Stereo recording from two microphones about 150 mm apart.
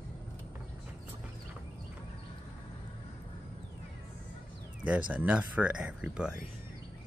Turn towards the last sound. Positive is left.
turn(degrees=-5)  # may be behind; listen again after turning